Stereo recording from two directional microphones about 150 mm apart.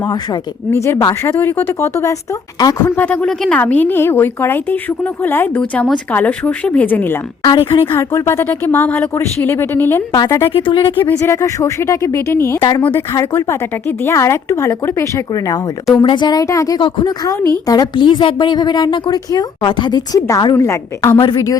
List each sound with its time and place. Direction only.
0.7 s a woman's voice: 20° left (ahead or behind)
2.9 s speech: 10° left (ahead or behind)
7.4 s speech: 30° left (ahead or behind)
7.9 s a woman's voice: 15° left (ahead or behind)
10.5 s speech: 35° left (ahead or behind)
10.8 s a woman's voice: 20° left (ahead or behind)
12.5 s a woman's voice: 25° left (ahead or behind)
12.8 s a woman's voice: 15° left (ahead or behind)